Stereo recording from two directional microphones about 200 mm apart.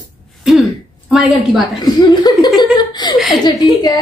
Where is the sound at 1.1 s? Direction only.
Centre (ahead or behind).